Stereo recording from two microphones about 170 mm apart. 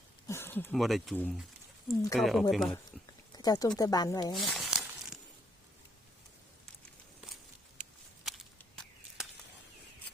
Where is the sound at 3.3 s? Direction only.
20° left (ahead or behind).